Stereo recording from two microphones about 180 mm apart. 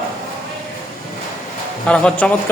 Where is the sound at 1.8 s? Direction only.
5° left (ahead or behind).